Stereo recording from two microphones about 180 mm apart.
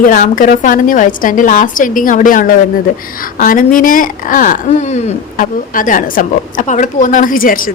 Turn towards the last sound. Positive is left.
turn(degrees=50)  # may be behind; listen again after turning